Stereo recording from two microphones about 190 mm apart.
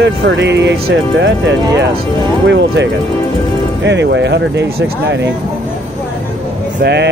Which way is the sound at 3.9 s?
70° right (ahead or behind).